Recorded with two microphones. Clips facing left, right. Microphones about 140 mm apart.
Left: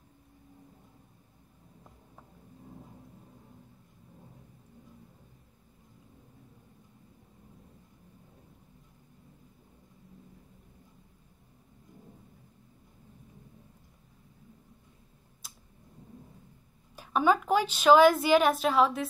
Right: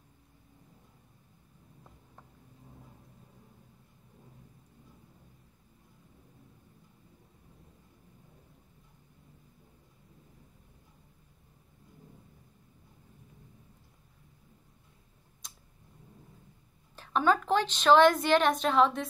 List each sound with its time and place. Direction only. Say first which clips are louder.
15.4 s tick-tock: even; 5° left (ahead or behind)
16.9 s a woman's voice: left 1 dB; 10° left (ahead or behind)